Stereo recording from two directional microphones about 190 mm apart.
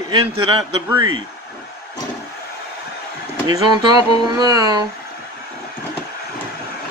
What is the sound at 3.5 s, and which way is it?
Speech, 20° right (ahead or behind).